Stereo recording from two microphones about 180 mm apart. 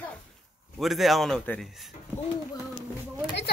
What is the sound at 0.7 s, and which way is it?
Speech, centre (ahead or behind).